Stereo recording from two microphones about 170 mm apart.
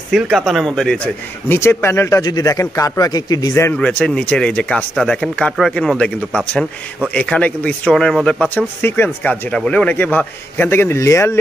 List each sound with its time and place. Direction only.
0.1 s speech: centre (ahead or behind); by 3.7 s 20° left (ahead or behind)
3.7 s speech: 5° left (ahead or behind)